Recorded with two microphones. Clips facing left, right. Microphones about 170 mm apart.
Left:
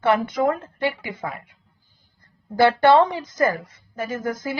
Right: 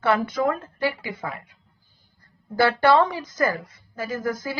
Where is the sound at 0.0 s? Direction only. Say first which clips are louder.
Left 2 dB; 20° left (ahead or behind).